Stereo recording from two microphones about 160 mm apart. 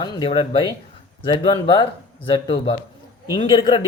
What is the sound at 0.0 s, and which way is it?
Speech, 25° left (ahead or behind).